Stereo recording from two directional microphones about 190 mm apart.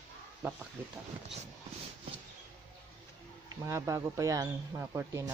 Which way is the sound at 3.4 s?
15° right (ahead or behind).